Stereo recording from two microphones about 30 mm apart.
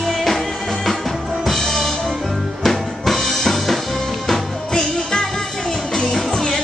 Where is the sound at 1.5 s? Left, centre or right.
Centre.